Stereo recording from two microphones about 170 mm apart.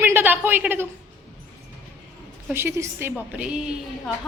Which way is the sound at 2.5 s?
15° right (ahead or behind).